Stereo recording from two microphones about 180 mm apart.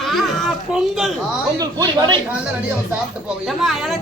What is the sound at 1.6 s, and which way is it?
Speech, 20° right (ahead or behind).